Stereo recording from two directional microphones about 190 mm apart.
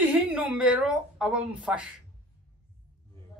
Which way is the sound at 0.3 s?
5° right (ahead or behind).